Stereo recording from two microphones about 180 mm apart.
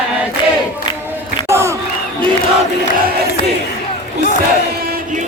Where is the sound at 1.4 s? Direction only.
15° right (ahead or behind).